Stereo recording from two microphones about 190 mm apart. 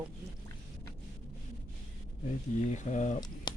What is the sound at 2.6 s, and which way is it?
Speech, 40° left (ahead or behind).